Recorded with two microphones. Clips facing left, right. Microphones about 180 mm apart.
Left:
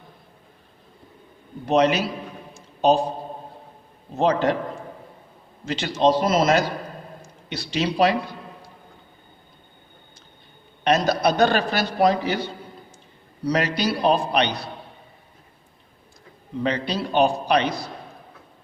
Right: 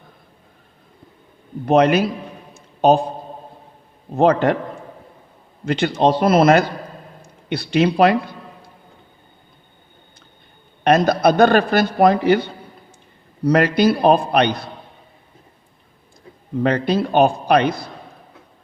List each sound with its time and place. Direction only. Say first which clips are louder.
1.6 s a man's voice: right 5 dB; 55° right (ahead or behind)
2.5 s a sound: right 4 dB; 55° right (ahead or behind)
4.1 s a man's voice: right 5 dB; 55° right (ahead or behind)
5.6 s a man's voice: right 3 dB; 55° right (ahead or behind)
10.8 s a man's voice: right 5 dB; 55° right (ahead or behind)
16.6 s a man's voice: right 6 dB; 55° right (ahead or behind)